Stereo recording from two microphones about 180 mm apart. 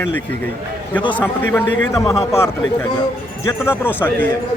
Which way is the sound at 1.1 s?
10° left (ahead or behind).